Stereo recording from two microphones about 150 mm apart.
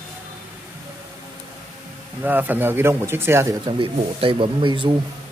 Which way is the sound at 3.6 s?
35° right (ahead or behind).